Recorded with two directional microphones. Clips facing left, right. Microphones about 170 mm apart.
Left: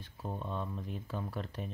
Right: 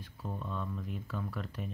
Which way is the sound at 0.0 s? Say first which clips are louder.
Left 1 dB; 25° left (ahead or behind).